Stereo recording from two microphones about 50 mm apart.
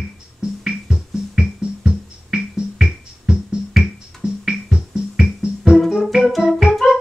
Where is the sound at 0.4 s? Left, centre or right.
Centre.